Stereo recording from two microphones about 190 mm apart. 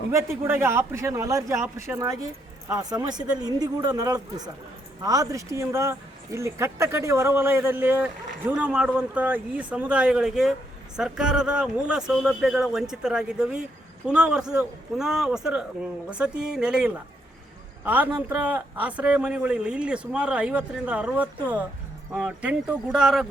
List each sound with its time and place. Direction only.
0.1 s a man's voice: 15° right (ahead or behind)